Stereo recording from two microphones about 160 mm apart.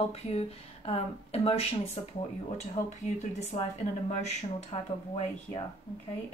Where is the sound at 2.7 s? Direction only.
45° left (ahead or behind).